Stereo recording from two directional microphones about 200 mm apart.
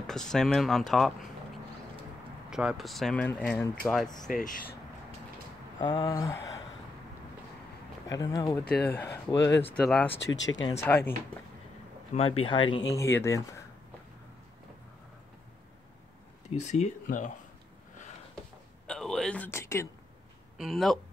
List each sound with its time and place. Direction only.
0.0 s speech: 5° left (ahead or behind)
2.5 s speech: centre (ahead or behind)
4.3 s speech: 45° left (ahead or behind)
5.8 s speech: 20° left (ahead or behind)
8.1 s speech: 20° left (ahead or behind)
10.1 s speech: 65° left (ahead or behind)
10.8 s speech: 10° left (ahead or behind)
12.1 s speech: 30° left (ahead or behind)
12.9 s speech: 15° left (ahead or behind)
16.4 s speech: 35° left (ahead or behind)
18.9 s a sound: 5° left (ahead or behind)
20.5 s speech: centre (ahead or behind)